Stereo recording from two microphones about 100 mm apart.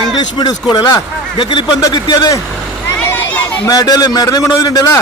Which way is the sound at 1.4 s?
55° left (ahead or behind).